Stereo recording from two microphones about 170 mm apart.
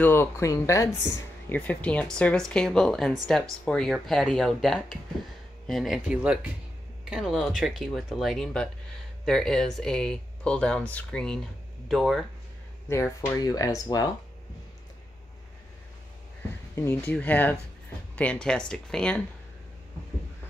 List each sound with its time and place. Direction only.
0.0 s speech: 15° left (ahead or behind)
12.9 s speech: 15° left (ahead or behind)
16.7 s speech: 15° left (ahead or behind)